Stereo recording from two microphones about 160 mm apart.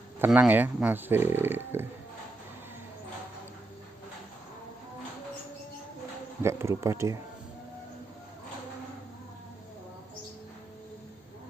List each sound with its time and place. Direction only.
0.2 s speech: 10° right (ahead or behind)
6.4 s speech: 15° right (ahead or behind)